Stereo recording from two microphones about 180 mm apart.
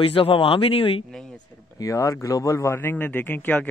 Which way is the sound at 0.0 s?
30° left (ahead or behind).